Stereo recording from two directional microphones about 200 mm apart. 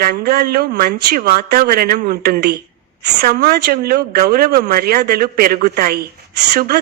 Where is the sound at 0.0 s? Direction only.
50° right (ahead or behind).